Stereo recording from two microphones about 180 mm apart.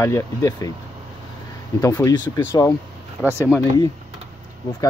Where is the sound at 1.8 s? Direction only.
20° left (ahead or behind).